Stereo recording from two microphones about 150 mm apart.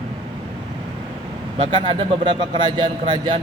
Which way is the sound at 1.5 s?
35° right (ahead or behind).